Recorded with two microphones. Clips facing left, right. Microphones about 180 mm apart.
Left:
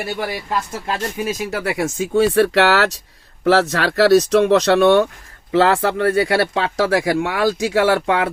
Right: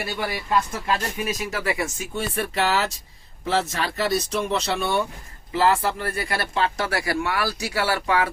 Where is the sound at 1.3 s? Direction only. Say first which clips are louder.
Left 4 dB; 65° left (ahead or behind).